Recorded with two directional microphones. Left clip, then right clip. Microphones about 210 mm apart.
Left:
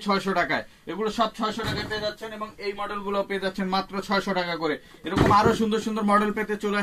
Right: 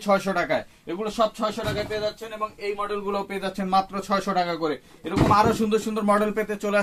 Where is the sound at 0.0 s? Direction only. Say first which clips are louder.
Right 2 dB; 40° right (ahead or behind).